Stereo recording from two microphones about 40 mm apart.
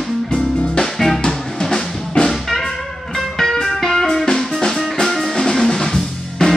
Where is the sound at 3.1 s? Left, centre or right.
Centre.